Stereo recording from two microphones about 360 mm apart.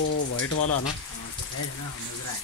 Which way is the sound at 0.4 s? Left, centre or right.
Left.